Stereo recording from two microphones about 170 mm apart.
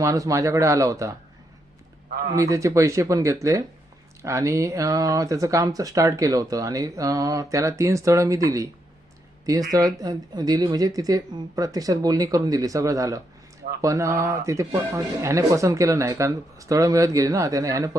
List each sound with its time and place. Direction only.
0.0 s speech: 20° right (ahead or behind)
2.3 s speech: 20° right (ahead or behind)
9.7 s speech: 20° right (ahead or behind)